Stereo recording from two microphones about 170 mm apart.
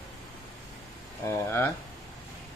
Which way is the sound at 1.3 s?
15° left (ahead or behind).